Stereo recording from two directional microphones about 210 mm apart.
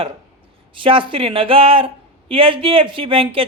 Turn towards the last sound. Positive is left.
turn(degrees=-25)  # may be behind; listen again after turning